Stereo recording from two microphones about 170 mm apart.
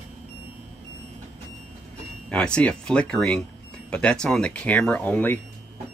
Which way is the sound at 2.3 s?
5° left (ahead or behind).